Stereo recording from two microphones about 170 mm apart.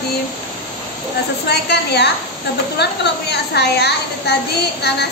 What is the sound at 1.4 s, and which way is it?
A woman's voice, 75° left (ahead or behind).